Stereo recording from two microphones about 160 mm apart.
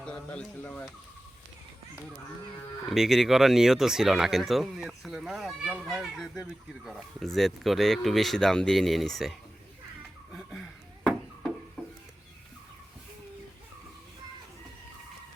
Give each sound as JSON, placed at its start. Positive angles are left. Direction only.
{"t": 0.0, "sound": "speech", "side_deg": 5}
{"t": 2.9, "sound": "speech", "side_deg": 0}